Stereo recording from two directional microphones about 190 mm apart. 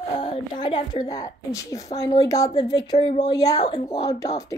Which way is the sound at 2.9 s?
35° left (ahead or behind).